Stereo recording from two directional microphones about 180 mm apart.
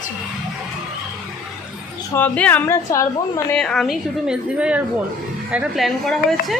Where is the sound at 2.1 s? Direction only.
10° left (ahead or behind).